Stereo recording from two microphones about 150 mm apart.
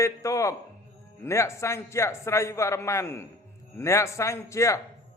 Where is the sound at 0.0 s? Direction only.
20° left (ahead or behind).